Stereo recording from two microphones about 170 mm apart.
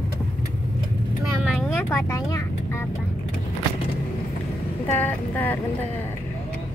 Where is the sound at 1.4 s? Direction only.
5° right (ahead or behind).